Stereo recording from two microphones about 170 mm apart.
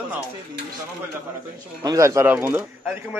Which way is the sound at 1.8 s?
20° right (ahead or behind).